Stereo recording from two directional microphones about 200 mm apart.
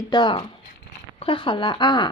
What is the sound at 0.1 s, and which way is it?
A woman's voice, 25° left (ahead or behind).